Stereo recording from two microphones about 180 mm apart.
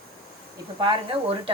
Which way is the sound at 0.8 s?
30° right (ahead or behind).